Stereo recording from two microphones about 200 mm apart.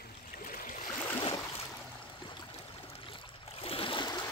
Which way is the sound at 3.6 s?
30° left (ahead or behind).